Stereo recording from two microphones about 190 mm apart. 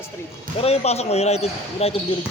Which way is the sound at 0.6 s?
35° left (ahead or behind).